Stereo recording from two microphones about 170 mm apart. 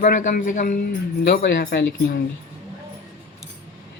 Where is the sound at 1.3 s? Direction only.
65° left (ahead or behind).